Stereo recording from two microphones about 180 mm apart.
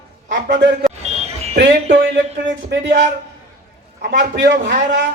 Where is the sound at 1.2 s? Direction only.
35° right (ahead or behind).